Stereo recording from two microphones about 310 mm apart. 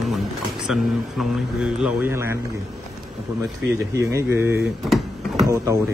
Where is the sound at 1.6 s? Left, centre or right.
Centre.